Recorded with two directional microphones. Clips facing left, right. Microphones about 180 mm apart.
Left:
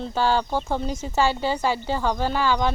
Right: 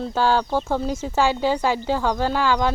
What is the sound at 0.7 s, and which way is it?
Speech, 5° right (ahead or behind).